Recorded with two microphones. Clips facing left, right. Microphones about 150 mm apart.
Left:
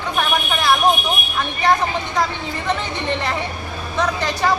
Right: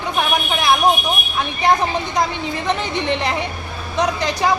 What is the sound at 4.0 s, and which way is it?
Speech, 15° right (ahead or behind).